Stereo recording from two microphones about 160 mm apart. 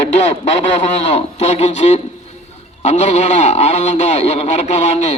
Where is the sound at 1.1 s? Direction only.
45° left (ahead or behind).